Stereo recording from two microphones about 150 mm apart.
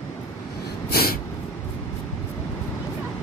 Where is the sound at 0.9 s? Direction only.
90° left.